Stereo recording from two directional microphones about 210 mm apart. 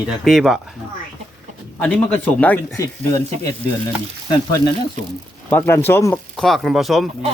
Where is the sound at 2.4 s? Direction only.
10° left (ahead or behind).